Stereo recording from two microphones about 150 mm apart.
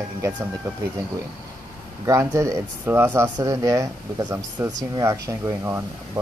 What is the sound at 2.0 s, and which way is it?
Speech, 20° right (ahead or behind).